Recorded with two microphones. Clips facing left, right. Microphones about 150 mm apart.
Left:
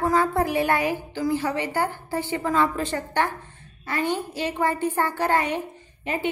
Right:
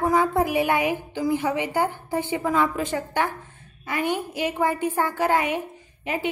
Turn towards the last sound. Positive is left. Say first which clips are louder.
# even
turn(degrees=-5)  # may be behind; listen again after turning